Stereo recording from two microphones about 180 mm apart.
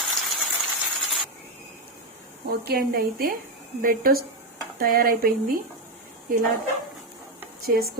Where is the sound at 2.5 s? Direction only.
60° right (ahead or behind).